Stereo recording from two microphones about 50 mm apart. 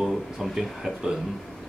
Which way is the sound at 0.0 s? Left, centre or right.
Centre.